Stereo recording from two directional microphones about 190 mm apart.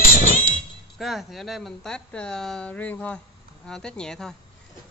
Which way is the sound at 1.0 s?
Centre (ahead or behind).